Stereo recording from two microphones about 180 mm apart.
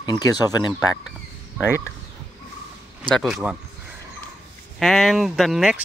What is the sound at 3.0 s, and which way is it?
Speech, centre (ahead or behind).